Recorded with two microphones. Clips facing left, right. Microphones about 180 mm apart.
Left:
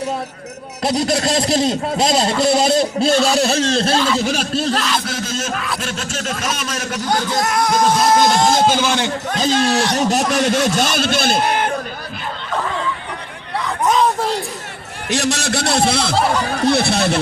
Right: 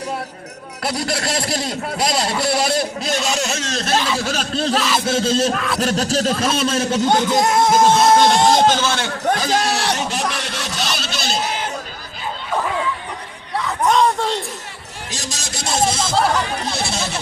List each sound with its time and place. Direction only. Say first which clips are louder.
0.8 s a man's voice: left 5 dB; 20° left (ahead or behind)
4.2 s a man's voice: left 3 dB; 15° left (ahead or behind)
4.5 s a sound: even; centre (ahead or behind)
5.0 s music: right 6 dB; 30° right (ahead or behind)
5.5 s a sound: right 2 dB; centre (ahead or behind)
5.8 s speech: right 7 dB; 40° right (ahead or behind)
8.3 s a man's voice: even; 5° left (ahead or behind)
9.9 s a man's voice: left 6 dB; 40° left (ahead or behind)
13.6 s a sound: even; centre (ahead or behind)
15.1 s speech: left 13 dB; 65° left (ahead or behind)
16.1 s a sound: right 2 dB; centre (ahead or behind)
16.6 s speech: left 9 dB; 60° left (ahead or behind)